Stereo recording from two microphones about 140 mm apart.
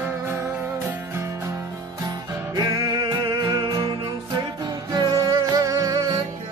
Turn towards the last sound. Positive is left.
turn(degrees=-25)  # may be behind; listen again after turning